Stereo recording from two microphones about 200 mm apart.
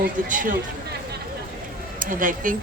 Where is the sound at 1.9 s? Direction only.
40° right (ahead or behind).